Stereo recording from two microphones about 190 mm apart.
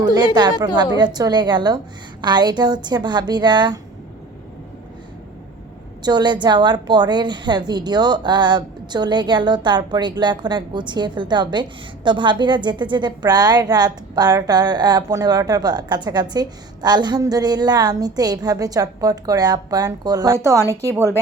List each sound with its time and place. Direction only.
0.6 s a woman's voice: 20° right (ahead or behind)
6.0 s a woman's voice: 20° right (ahead or behind)